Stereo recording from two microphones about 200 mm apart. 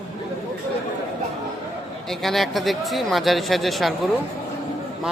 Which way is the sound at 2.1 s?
Centre (ahead or behind).